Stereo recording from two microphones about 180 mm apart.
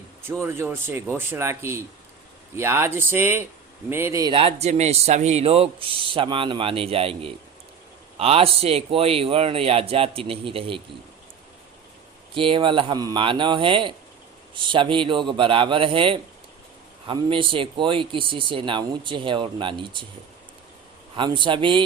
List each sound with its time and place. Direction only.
0.4 s a man's voice: 15° right (ahead or behind); by 10.8 s 30° right (ahead or behind)
12.3 s speech: 30° right (ahead or behind)
21.2 s speech: 25° right (ahead or behind)